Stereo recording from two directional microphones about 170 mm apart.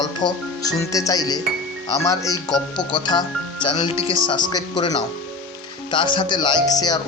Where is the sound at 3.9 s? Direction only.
20° right (ahead or behind).